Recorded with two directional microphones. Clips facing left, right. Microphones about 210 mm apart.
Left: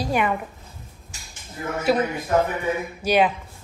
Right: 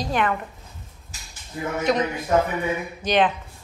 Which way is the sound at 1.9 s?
5° left (ahead or behind).